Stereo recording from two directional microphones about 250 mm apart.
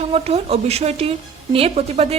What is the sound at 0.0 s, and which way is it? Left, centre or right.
Speech, right.